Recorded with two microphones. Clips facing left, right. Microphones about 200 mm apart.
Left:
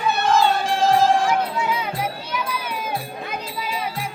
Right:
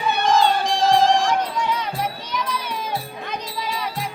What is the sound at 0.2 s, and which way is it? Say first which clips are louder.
Music: right 1 dB; 5° left (ahead or behind).